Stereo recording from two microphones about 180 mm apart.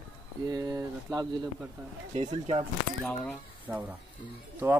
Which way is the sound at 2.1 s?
35° right (ahead or behind).